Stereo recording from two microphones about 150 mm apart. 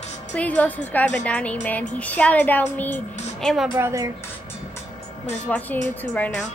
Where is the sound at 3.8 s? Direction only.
20° right (ahead or behind).